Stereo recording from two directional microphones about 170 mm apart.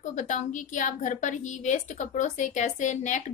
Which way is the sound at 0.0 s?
45° left (ahead or behind).